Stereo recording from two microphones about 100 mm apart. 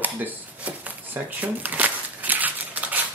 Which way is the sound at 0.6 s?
15° right (ahead or behind).